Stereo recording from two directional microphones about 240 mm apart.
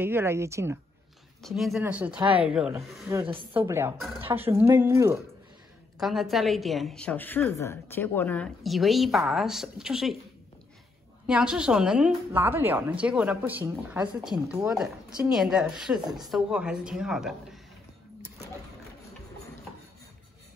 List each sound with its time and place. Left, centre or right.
0.0 s a woman's voice: centre
1.4 s a woman's voice: centre
2.1 s a woman's voice: right
2.4 s a woman's voice: centre
3.3 s a woman's voice: right
4.0 s a woman's voice: centre
5.9 s a woman's voice: centre
11.2 s a woman's voice: centre